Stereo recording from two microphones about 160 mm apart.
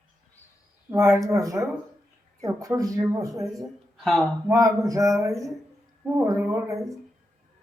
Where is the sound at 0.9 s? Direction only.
20° right (ahead or behind).